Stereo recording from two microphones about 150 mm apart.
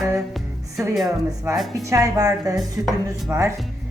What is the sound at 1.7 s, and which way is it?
A woman's voice, 20° right (ahead or behind).